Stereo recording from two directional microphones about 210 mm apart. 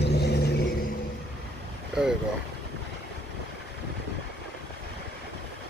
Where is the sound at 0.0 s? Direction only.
50° left (ahead or behind).